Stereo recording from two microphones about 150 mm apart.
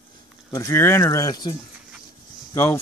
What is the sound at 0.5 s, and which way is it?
Speech, 20° left (ahead or behind).